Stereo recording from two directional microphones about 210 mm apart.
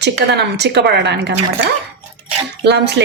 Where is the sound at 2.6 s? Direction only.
55° right (ahead or behind).